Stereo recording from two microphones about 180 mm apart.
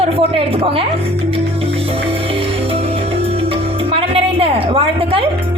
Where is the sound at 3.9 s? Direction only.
30° right (ahead or behind).